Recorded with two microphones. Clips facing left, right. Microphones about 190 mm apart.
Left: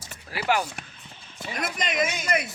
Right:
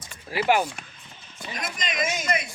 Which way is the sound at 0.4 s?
15° right (ahead or behind).